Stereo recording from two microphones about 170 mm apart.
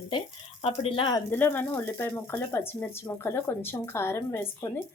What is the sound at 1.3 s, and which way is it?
Speech, 10° left (ahead or behind).